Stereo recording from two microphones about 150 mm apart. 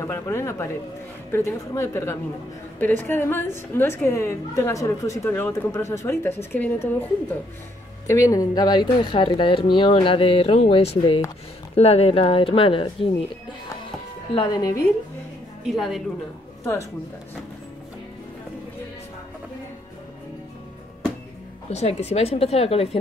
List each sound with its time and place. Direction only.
0.0 s a woman's voice: 20° left (ahead or behind)
8.1 s speech: 20° left (ahead or behind); by 13.1 s 35° left (ahead or behind)
14.3 s speech: 25° left (ahead or behind)
15.6 s speech: centre (ahead or behind)
21.6 s a woman's voice: 45° left (ahead or behind)